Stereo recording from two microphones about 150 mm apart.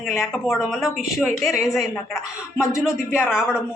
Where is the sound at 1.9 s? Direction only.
20° left (ahead or behind).